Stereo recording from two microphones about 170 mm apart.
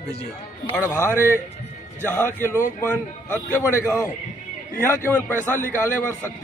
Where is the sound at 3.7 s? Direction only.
15° left (ahead or behind).